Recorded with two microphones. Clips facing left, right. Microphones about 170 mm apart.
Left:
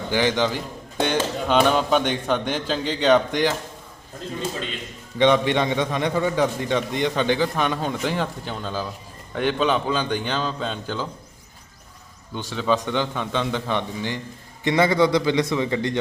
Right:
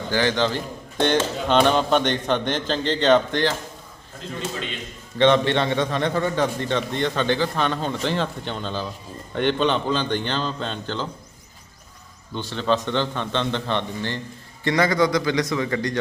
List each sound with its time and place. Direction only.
0.1 s a man's voice: 15° left (ahead or behind)
5.1 s a man's voice: 10° left (ahead or behind)
12.3 s a man's voice: 10° left (ahead or behind)